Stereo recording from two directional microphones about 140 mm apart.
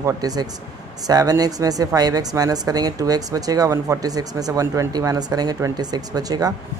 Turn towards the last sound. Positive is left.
turn(degrees=-25)  # may be behind; listen again after turning